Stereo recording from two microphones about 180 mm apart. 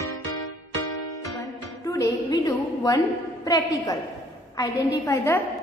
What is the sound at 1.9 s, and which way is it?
A woman's voice, 20° left (ahead or behind).